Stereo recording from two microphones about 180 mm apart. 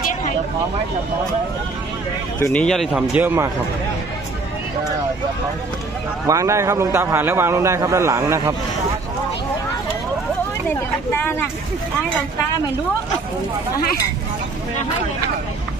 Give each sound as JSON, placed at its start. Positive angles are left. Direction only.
{"t": 2.4, "sound": "speech", "side_deg": 5}
{"t": 6.2, "sound": "a man's voice", "side_deg": -15}
{"t": 10.7, "sound": "speech", "side_deg": 10}